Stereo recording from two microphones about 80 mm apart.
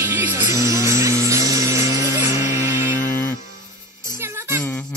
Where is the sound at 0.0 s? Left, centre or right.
Right.